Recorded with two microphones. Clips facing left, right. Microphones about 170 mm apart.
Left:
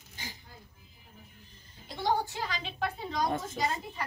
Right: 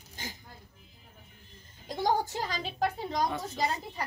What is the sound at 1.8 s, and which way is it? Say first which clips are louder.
A woman's voice: right 2 dB; 45° right (ahead or behind).